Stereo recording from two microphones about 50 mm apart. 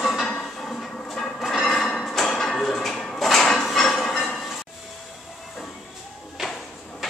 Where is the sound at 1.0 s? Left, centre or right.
Centre.